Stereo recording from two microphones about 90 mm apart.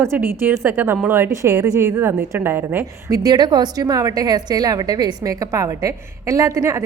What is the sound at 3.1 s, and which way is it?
A woman's voice, 45° right (ahead or behind).